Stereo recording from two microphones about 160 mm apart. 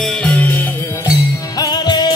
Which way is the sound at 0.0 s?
10° left (ahead or behind).